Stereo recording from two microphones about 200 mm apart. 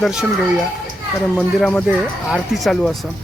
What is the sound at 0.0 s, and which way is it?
Speech, 5° right (ahead or behind).